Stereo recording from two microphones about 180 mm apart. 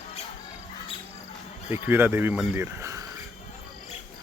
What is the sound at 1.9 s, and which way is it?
Speech, 10° right (ahead or behind).